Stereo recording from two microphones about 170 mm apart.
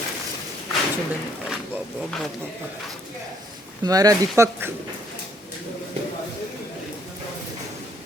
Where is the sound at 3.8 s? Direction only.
20° right (ahead or behind).